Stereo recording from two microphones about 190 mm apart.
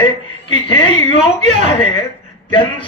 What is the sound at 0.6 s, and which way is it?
Speech, 25° left (ahead or behind).